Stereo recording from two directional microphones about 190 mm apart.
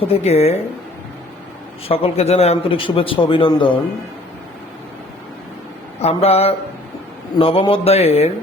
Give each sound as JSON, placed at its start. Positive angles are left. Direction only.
{"t": 0.1, "sound": "a man's voice", "side_deg": 35}
{"t": 1.9, "sound": "speech", "side_deg": 30}
{"t": 6.0, "sound": "a man's voice", "side_deg": 30}